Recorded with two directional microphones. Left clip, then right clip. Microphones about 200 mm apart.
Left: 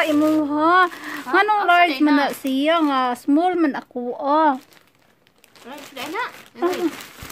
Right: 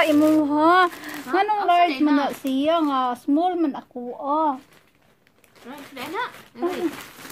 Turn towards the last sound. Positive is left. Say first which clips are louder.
# left 4 dB
turn(degrees=35)  # may be behind; listen again after turning